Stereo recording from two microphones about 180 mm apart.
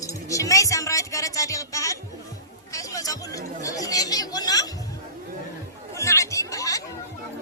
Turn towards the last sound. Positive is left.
turn(degrees=20)  # may be behind; listen again after turning